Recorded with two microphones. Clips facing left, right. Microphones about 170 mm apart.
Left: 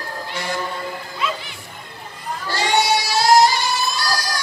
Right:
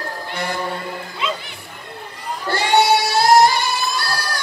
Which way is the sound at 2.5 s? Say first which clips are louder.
Right 4 dB; 60° right (ahead or behind).